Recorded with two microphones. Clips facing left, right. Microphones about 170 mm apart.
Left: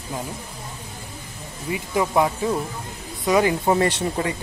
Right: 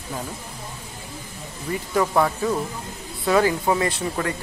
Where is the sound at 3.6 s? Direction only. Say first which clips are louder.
Left 2 dB; 30° left (ahead or behind).